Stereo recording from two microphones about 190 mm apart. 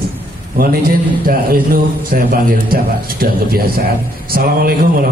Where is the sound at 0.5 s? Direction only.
50° right (ahead or behind).